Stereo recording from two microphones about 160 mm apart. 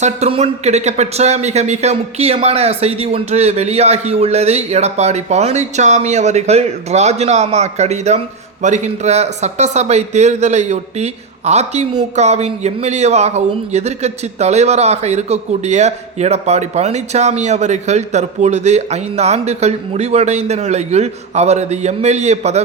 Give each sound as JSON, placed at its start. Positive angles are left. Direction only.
{"t": 0.0, "sound": "speech", "side_deg": -40}